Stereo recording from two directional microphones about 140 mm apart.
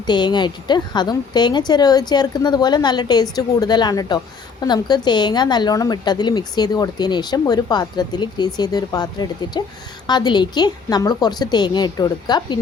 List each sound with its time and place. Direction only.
0.0 s a woman's voice: 30° left (ahead or behind)